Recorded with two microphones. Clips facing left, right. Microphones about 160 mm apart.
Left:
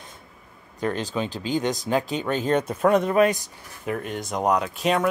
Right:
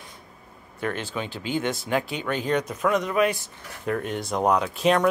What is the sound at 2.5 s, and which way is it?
Speech, 30° left (ahead or behind).